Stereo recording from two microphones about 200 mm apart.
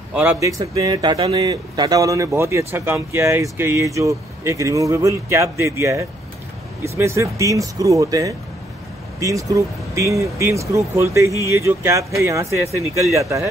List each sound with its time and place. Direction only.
0.1 s speech: 10° right (ahead or behind); by 1.4 s 30° right (ahead or behind)
1.4 s speech: 20° right (ahead or behind)